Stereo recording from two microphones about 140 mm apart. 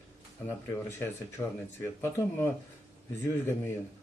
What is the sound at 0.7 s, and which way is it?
Speech, 15° left (ahead or behind).